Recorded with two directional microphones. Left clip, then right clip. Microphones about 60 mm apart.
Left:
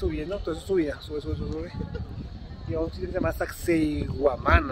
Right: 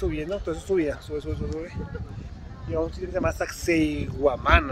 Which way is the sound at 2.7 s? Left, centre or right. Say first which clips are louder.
Right 2 dB; centre.